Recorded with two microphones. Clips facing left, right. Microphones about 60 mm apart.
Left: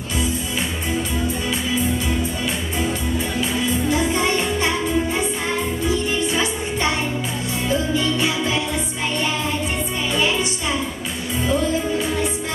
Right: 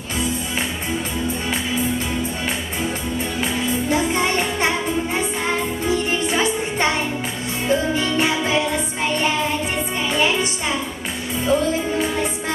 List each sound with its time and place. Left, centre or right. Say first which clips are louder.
3.4 s music: even; right
5.9 s music: right 2 dB; right